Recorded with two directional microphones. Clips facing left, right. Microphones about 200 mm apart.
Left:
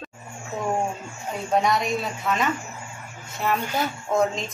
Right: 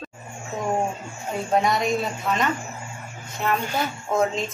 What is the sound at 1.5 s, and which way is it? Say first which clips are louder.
Speech: right 1 dB; centre (ahead or behind).